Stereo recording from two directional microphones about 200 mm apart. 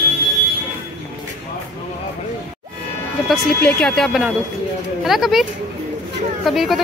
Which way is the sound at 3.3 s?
5° left (ahead or behind).